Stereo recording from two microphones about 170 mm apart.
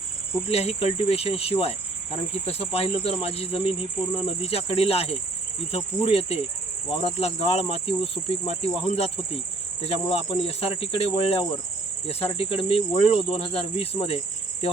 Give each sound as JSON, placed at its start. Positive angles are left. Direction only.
{"t": 0.4, "sound": "speech", "side_deg": 35}